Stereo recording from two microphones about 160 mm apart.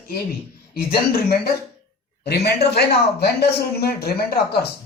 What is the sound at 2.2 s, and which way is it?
Speech, 90° left.